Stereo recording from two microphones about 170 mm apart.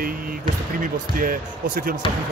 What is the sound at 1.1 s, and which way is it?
Speech, 55° right (ahead or behind).